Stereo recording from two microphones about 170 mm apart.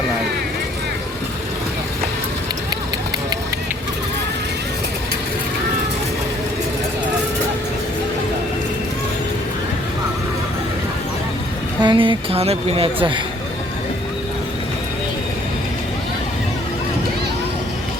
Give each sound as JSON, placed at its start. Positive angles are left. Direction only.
{"t": 11.8, "sound": "a woman's voice", "side_deg": -30}